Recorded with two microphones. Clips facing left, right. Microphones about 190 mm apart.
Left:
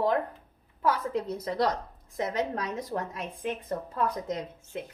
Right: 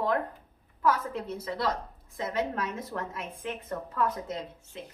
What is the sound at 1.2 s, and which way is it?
A woman's voice, 15° left (ahead or behind).